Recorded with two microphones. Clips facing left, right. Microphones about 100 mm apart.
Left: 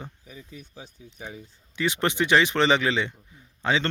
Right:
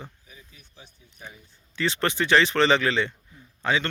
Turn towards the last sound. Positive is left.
turn(degrees=25)  # may be behind; listen again after turning